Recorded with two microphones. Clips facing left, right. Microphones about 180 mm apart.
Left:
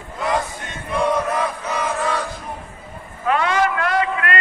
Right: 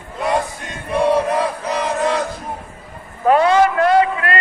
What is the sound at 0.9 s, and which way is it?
Chant, 30° right (ahead or behind).